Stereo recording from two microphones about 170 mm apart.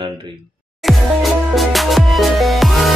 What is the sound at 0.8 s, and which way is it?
Music, centre (ahead or behind).